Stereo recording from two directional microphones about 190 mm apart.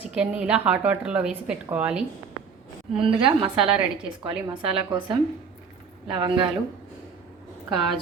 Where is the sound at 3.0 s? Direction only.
30° right (ahead or behind).